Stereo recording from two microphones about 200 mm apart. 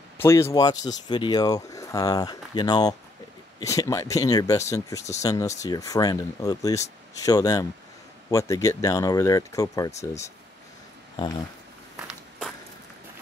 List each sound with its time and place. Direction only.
0.2 s speech: 15° left (ahead or behind)
12.0 s walk: centre (ahead or behind)